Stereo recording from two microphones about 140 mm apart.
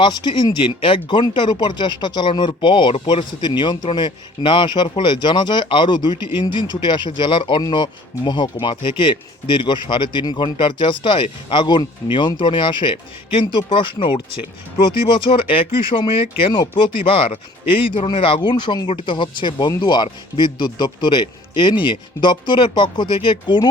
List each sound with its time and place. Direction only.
0.0 s speech: 35° left (ahead or behind)